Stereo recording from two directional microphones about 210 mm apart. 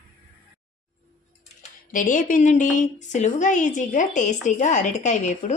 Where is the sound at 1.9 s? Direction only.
40° left (ahead or behind).